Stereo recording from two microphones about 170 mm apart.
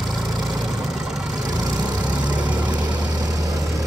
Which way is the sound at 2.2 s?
10° right (ahead or behind).